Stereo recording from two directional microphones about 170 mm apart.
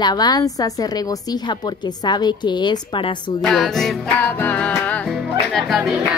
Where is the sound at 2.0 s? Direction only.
25° left (ahead or behind).